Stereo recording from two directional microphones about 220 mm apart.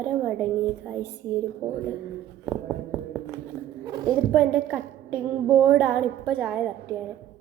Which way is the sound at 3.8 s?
20° right (ahead or behind).